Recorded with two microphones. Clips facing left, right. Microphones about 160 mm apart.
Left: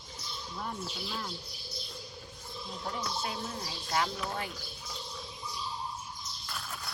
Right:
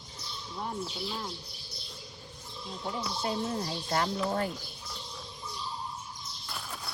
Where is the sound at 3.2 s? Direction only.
45° right (ahead or behind).